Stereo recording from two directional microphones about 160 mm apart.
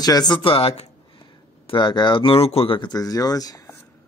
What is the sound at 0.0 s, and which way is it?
Speech, 25° left (ahead or behind).